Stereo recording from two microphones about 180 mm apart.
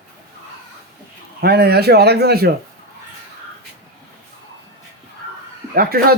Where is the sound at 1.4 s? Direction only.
65° right (ahead or behind).